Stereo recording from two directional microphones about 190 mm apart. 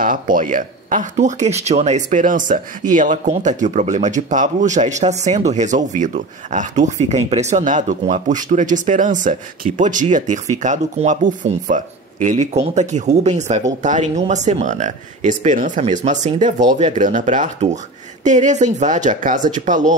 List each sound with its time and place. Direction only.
0.0 s speech: 45° right (ahead or behind)